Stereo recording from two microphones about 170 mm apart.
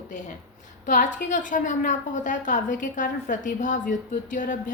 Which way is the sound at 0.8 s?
50° left (ahead or behind).